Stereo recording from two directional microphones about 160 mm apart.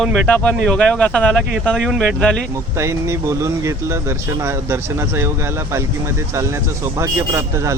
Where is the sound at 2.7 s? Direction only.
20° right (ahead or behind).